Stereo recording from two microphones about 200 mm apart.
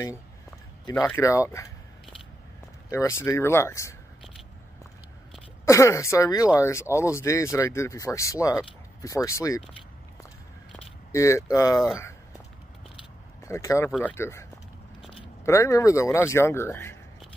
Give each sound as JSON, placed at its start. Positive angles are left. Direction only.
{"t": 0.9, "sound": "speech", "side_deg": 10}
{"t": 2.9, "sound": "speech", "side_deg": 15}
{"t": 5.7, "sound": "speech", "side_deg": 15}
{"t": 11.1, "sound": "speech", "side_deg": 15}
{"t": 12.0, "sound": "a sound", "side_deg": 15}
{"t": 13.4, "sound": "speech", "side_deg": 15}
{"t": 15.4, "sound": "speech", "side_deg": 15}